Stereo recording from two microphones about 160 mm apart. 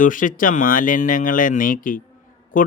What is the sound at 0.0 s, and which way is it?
Speech, 55° left (ahead or behind).